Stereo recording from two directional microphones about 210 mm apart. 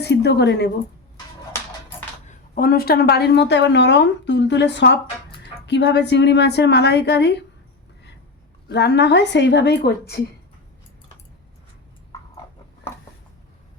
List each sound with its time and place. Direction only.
0.0 s a woman's voice: 50° left (ahead or behind)
2.2 s a woman's voice: 45° left (ahead or behind)
8.7 s a woman's voice: 55° left (ahead or behind)